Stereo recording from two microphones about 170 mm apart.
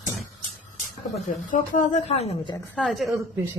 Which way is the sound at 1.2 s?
50° left (ahead or behind).